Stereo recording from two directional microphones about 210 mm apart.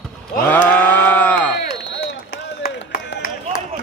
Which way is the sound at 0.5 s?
10° left (ahead or behind).